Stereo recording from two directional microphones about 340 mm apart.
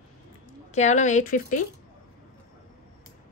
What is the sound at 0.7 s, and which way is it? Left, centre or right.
Speech, left.